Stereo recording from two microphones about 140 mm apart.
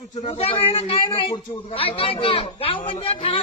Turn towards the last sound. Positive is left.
turn(degrees=40)  # may be behind; listen again after turning